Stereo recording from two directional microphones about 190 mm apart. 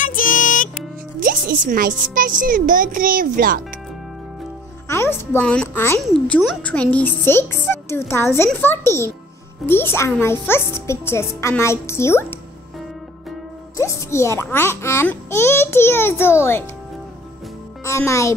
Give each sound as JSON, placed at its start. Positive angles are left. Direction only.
{"t": 0.0, "sound": "music", "side_deg": 45}
{"t": 1.2, "sound": "a child's voice", "side_deg": -45}
{"t": 4.8, "sound": "a child's voice", "side_deg": 15}
{"t": 13.7, "sound": "a child's voice", "side_deg": 15}
{"t": 17.8, "sound": "a child's voice", "side_deg": 15}